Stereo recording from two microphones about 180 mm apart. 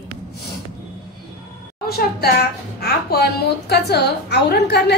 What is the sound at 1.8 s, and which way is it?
A woman's voice, 60° left (ahead or behind).